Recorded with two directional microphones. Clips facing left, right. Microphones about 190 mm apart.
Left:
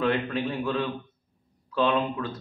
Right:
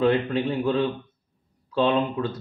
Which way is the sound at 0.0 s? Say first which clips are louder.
Right 4 dB; 30° right (ahead or behind).